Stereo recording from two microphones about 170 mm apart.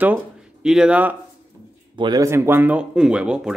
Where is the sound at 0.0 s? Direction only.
5° right (ahead or behind).